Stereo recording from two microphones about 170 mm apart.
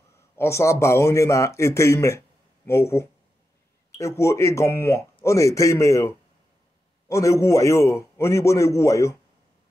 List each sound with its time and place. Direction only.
0.4 s speech: 15° left (ahead or behind)